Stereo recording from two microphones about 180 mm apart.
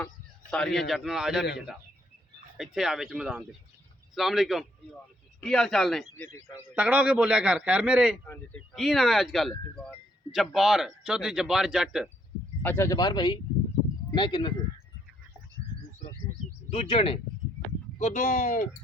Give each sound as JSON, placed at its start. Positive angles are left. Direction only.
{"t": 0.5, "sound": "speech", "side_deg": 0}
{"t": 2.6, "sound": "speech", "side_deg": 0}
{"t": 6.1, "sound": "a man's voice", "side_deg": 15}
{"t": 6.7, "sound": "a man's voice", "side_deg": -10}
{"t": 12.6, "sound": "speech", "side_deg": 15}
{"t": 16.7, "sound": "speech", "side_deg": 35}